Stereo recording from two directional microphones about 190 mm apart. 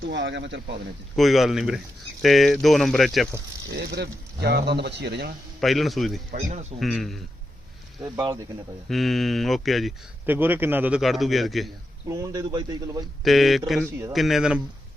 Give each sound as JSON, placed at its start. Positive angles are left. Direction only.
{"t": 0.0, "sound": "speech", "side_deg": -70}
{"t": 1.1, "sound": "a man's voice", "side_deg": 0}
{"t": 3.8, "sound": "speech", "side_deg": -60}
{"t": 5.5, "sound": "a man's voice", "side_deg": 0}
{"t": 6.3, "sound": "speech", "side_deg": -35}
{"t": 6.7, "sound": "a man's voice", "side_deg": 0}
{"t": 8.9, "sound": "a man's voice", "side_deg": 0}
{"t": 10.2, "sound": "a man's voice", "side_deg": -10}
{"t": 12.0, "sound": "a man's voice", "side_deg": -15}
{"t": 13.2, "sound": "a man's voice", "side_deg": 0}